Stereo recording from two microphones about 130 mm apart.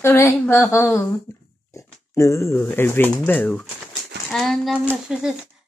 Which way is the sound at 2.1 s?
20° left (ahead or behind).